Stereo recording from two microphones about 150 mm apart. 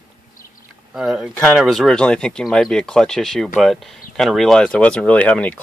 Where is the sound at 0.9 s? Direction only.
5° right (ahead or behind).